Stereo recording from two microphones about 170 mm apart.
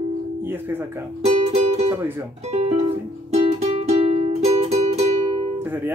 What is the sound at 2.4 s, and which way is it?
Music, 40° right (ahead or behind).